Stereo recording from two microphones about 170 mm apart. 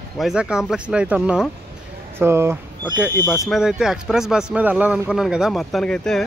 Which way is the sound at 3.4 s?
Centre (ahead or behind).